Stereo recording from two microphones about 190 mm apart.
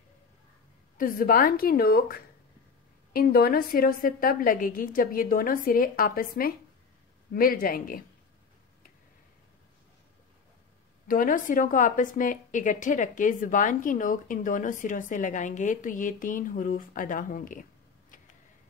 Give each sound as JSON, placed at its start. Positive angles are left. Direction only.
{"t": 0.9, "sound": "a woman's voice", "side_deg": 45}
{"t": 11.1, "sound": "a woman's voice", "side_deg": 45}